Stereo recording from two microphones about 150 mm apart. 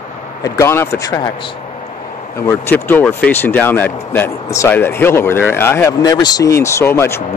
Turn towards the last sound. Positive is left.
turn(degrees=15)  # may be behind; listen again after turning